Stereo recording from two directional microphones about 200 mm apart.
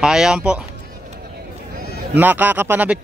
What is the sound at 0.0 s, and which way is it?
Speech, 5° right (ahead or behind).